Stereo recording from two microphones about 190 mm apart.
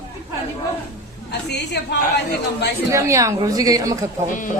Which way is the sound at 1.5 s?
60° left (ahead or behind).